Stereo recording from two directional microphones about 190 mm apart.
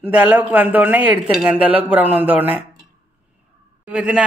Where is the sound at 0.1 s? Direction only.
5° right (ahead or behind).